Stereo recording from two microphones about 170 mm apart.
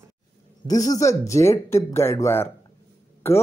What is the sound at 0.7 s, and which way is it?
A man's voice, 20° left (ahead or behind).